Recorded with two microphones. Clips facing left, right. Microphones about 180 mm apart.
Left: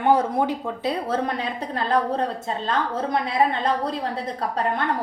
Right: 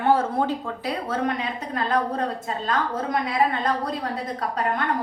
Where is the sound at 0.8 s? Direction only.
35° left (ahead or behind).